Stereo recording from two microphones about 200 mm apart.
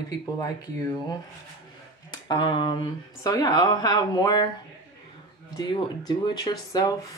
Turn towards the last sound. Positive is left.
turn(degrees=20)  # may be behind; listen again after turning